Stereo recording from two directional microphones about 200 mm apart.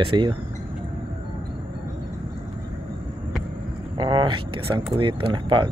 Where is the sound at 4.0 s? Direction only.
25° right (ahead or behind).